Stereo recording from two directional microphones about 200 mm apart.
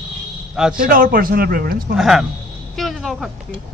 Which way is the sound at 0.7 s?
45° right (ahead or behind).